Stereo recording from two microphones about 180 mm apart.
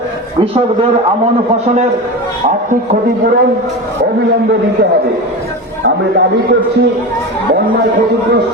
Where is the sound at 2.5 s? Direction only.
45° right (ahead or behind).